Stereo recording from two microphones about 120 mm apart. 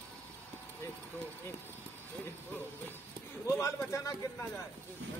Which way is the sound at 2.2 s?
15° left (ahead or behind).